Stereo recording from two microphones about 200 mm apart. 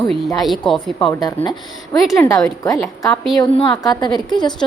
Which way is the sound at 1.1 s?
15° left (ahead or behind).